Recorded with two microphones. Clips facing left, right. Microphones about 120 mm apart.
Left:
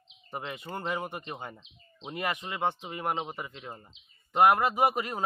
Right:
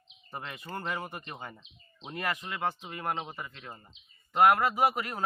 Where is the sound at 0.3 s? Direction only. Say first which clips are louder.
Left 3 dB; 20° left (ahead or behind).